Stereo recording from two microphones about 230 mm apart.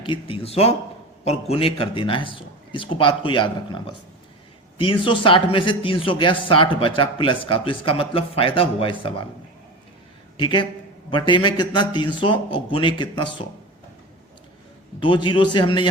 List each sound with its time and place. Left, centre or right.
0.0 s speech: left
4.8 s speech: left
10.3 s a man's voice: left
15.0 s speech: left